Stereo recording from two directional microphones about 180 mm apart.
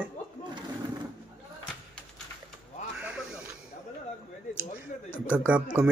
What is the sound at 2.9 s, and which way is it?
Music, 5° right (ahead or behind).